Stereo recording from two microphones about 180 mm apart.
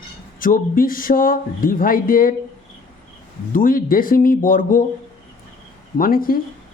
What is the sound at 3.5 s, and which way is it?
Speech, 50° left (ahead or behind).